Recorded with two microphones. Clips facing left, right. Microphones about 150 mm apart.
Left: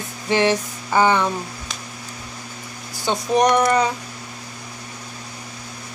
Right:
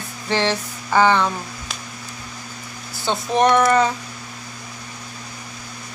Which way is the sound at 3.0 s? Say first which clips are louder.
Even; 15° left (ahead or behind).